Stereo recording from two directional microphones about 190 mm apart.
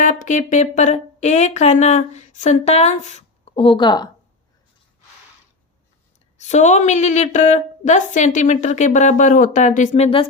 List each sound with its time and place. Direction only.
0.0 s speech: 45° left (ahead or behind); by 4.1 s 25° left (ahead or behind)
6.4 s speech: 35° left (ahead or behind)